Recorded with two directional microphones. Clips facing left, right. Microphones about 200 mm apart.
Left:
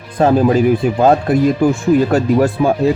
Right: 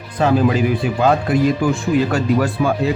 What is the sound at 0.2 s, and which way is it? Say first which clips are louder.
Speech: left 4 dB; 45° left (ahead or behind).